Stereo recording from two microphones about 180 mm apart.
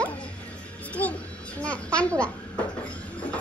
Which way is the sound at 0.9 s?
10° left (ahead or behind).